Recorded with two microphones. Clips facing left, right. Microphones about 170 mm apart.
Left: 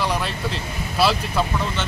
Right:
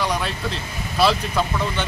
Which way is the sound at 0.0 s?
5° left (ahead or behind).